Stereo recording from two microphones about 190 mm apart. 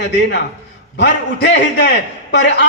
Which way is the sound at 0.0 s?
65° left (ahead or behind).